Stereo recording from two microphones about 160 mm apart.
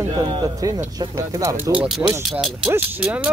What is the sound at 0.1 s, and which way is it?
Speech, 25° right (ahead or behind).